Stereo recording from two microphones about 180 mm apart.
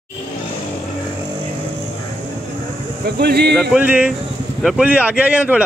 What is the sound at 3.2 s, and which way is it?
Speech, 65° right (ahead or behind).